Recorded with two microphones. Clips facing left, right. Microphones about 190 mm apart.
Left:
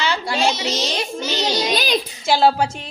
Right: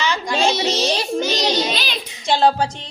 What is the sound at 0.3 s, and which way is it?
Speech, 30° right (ahead or behind).